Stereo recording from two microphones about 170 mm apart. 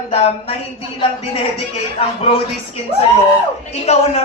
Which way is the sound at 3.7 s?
40° left (ahead or behind).